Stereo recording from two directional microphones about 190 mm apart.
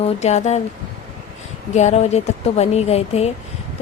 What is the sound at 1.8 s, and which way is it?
A woman's voice, 35° left (ahead or behind).